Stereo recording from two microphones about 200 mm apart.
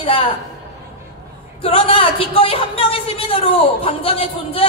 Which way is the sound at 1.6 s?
30° left (ahead or behind).